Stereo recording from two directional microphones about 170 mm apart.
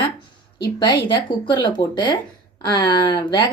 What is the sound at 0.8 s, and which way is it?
A woman's voice, 30° left (ahead or behind).